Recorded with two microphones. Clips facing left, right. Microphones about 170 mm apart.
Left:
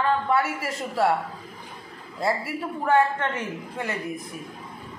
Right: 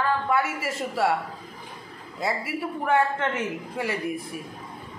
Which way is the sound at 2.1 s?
Centre (ahead or behind).